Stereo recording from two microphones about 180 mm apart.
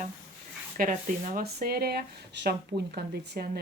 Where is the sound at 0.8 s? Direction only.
45° right (ahead or behind).